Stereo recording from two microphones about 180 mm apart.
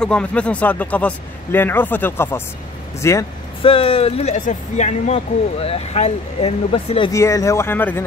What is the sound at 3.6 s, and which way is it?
Speech, 30° left (ahead or behind).